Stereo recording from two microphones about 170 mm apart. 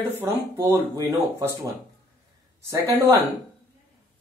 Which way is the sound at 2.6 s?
15° right (ahead or behind).